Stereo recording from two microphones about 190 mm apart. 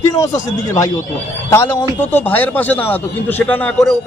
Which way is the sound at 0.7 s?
15° left (ahead or behind).